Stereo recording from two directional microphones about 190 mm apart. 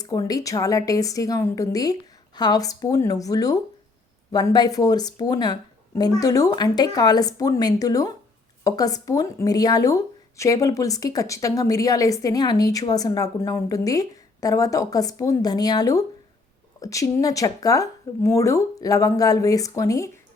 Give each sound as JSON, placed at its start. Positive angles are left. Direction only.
{"t": 0.0, "sound": "speech", "side_deg": 20}